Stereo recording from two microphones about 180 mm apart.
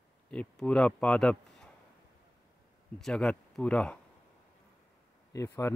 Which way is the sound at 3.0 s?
5° left (ahead or behind).